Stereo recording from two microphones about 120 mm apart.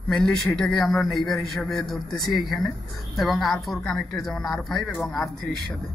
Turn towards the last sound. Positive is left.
turn(degrees=0)  # may be behind; listen again after turning